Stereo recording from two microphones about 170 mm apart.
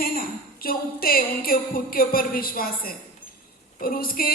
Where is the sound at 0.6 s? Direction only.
60° left (ahead or behind).